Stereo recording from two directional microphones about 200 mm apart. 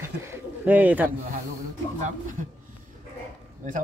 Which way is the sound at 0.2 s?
10° right (ahead or behind).